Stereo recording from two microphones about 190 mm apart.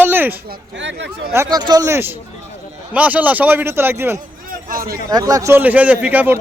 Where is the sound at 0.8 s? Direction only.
70° right (ahead or behind).